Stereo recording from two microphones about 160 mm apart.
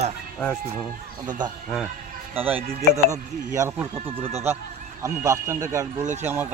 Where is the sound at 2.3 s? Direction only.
10° right (ahead or behind).